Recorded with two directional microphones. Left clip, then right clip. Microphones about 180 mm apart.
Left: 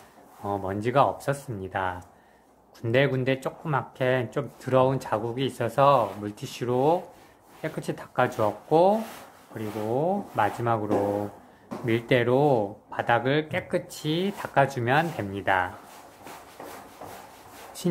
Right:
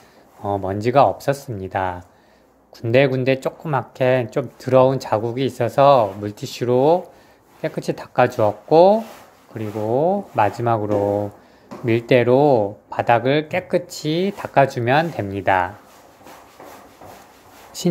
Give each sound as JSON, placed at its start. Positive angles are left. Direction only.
{"t": 0.4, "sound": "speech", "side_deg": -20}